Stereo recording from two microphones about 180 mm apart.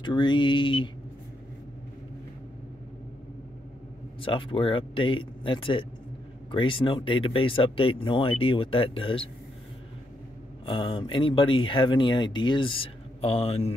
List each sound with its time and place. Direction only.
0.0 s speech: 25° left (ahead or behind)
4.2 s speech: 30° left (ahead or behind)
10.6 s speech: 30° left (ahead or behind)